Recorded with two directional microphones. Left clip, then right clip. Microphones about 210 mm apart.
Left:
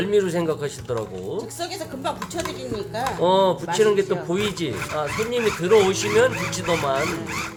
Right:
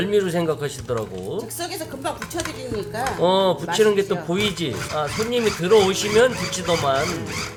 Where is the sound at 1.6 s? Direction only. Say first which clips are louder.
Even; 15° right (ahead or behind).